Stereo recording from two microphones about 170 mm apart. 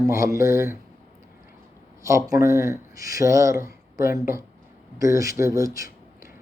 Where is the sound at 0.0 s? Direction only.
20° right (ahead or behind).